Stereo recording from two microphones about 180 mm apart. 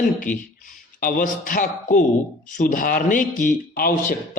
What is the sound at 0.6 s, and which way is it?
A man's voice, 50° left (ahead or behind).